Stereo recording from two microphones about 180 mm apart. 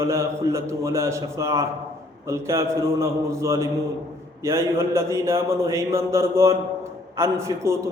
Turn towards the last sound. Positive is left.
turn(degrees=-15)  # may be behind; listen again after turning